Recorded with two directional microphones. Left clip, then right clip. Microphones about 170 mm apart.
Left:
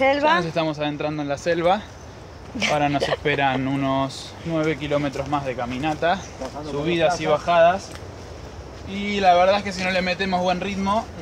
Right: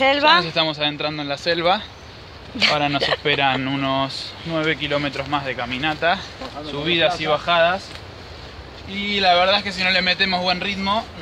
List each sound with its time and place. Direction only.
0.0 s speech: 15° right (ahead or behind)
0.5 s speech: 10° left (ahead or behind)
2.6 s speech: 10° right (ahead or behind)
8.9 s speech: 5° right (ahead or behind)